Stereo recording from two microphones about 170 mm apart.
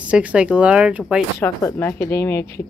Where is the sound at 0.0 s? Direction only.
5° right (ahead or behind).